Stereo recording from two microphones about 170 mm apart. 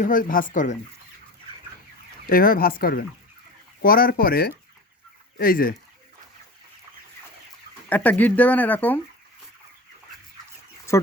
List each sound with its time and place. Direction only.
0.0 s speech: 55° left (ahead or behind)
2.3 s speech: 60° left (ahead or behind)
7.9 s speech: 10° left (ahead or behind)
10.9 s speech: 15° left (ahead or behind)